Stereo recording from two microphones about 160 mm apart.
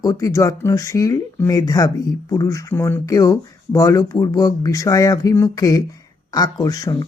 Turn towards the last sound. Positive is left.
turn(degrees=25)  # may be behind; listen again after turning